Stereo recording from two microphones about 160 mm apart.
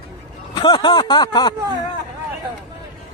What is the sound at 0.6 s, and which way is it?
Speech, 30° left (ahead or behind).